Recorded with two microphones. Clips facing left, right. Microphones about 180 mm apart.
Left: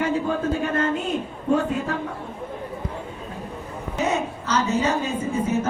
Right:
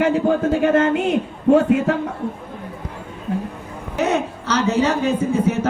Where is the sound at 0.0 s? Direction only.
70° right (ahead or behind).